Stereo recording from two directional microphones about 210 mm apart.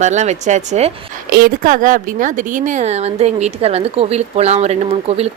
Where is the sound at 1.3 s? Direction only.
45° right (ahead or behind).